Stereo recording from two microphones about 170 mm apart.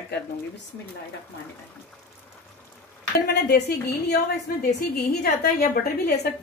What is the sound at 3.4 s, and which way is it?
A woman's voice, 75° left (ahead or behind).